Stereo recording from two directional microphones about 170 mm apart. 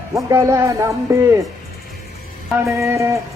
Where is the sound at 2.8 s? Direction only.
15° right (ahead or behind).